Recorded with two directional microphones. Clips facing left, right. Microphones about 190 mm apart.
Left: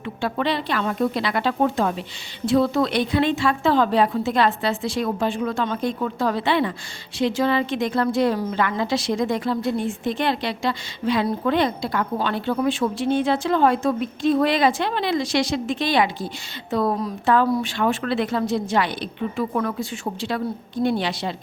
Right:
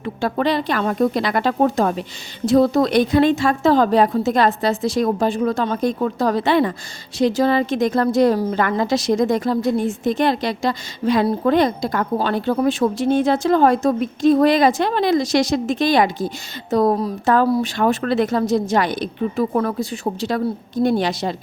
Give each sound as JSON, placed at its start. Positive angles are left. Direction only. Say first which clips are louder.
{"t": 0.0, "sound": "a woman's voice", "louder": "right 4 dB", "side_deg": -40}